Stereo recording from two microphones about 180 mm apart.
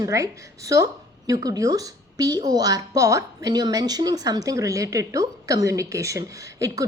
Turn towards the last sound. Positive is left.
turn(degrees=-20)  # may be behind; listen again after turning